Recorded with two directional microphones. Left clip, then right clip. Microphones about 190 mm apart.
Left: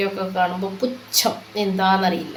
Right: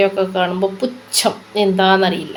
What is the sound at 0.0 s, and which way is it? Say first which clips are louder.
Speech: right 6 dB; 40° right (ahead or behind).